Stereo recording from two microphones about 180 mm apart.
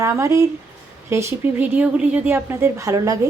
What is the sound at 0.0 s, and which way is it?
Speech, 15° right (ahead or behind).